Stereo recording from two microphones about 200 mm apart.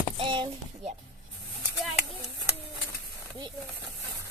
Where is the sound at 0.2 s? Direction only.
20° right (ahead or behind).